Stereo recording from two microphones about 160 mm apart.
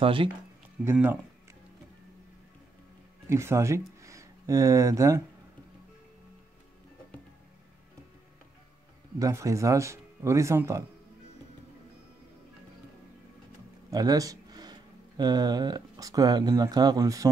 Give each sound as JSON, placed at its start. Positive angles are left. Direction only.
{"t": 0.0, "sound": "speech", "side_deg": -35}
{"t": 0.8, "sound": "speech", "side_deg": -5}
{"t": 3.3, "sound": "speech", "side_deg": -15}
{"t": 9.2, "sound": "speech", "side_deg": -20}
{"t": 13.8, "sound": "speech", "side_deg": -25}